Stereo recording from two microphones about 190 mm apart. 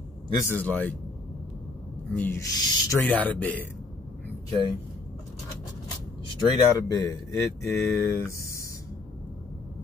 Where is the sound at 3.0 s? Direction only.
10° left (ahead or behind).